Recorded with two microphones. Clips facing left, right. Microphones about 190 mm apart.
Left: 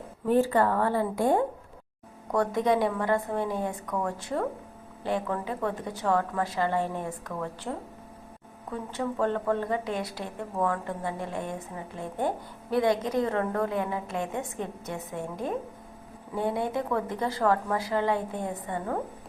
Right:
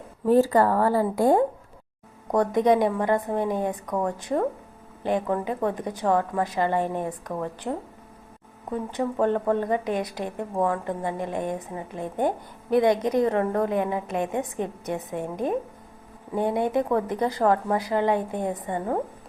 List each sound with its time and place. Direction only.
0.3 s speech: 40° right (ahead or behind)
2.3 s a woman's voice: 20° right (ahead or behind)